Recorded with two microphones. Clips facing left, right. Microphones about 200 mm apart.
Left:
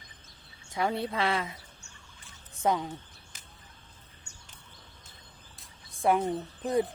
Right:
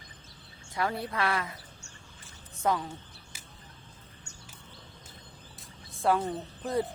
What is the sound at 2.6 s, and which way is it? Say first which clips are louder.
Speech: left 1 dB; 20° left (ahead or behind).